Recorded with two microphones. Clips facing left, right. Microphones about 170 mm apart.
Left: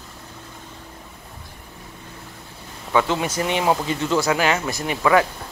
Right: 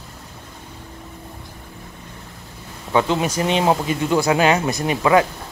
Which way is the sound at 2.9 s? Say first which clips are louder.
Right 2 dB; 20° right (ahead or behind).